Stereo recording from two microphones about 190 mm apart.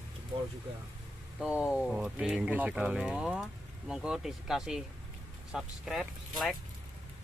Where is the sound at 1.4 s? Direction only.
5° right (ahead or behind).